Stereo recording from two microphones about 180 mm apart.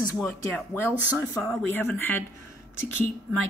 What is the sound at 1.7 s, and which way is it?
Speech, 10° left (ahead or behind).